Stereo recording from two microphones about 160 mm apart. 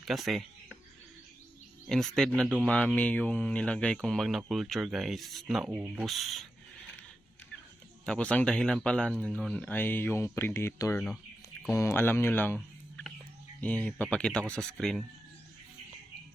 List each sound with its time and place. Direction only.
0.0 s a sound: centre (ahead or behind)
1.9 s speech: 5° left (ahead or behind)
8.0 s speech: 5° left (ahead or behind)
13.6 s speech: 10° left (ahead or behind)